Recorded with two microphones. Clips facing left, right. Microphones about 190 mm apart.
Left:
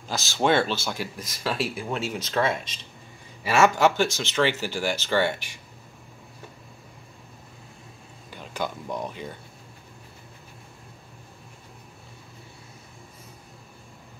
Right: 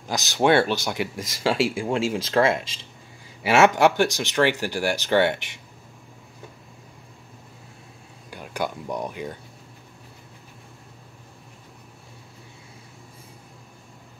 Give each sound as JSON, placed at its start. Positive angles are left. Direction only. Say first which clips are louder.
{"t": 0.1, "sound": "speech", "louder": "right 3 dB", "side_deg": -15}
{"t": 0.9, "sound": "speech", "louder": "right 5 dB", "side_deg": -90}
{"t": 3.6, "sound": "speech", "louder": "right 1 dB", "side_deg": -15}
{"t": 8.3, "sound": "speech", "louder": "right 3 dB", "side_deg": -10}